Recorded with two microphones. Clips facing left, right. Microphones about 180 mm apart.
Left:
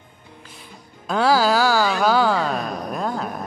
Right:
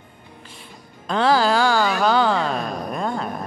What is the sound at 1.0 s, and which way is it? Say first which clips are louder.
Music: even; 5° left (ahead or behind).